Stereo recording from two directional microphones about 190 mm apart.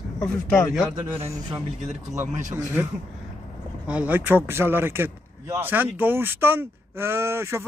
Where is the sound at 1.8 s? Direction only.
35° right (ahead or behind).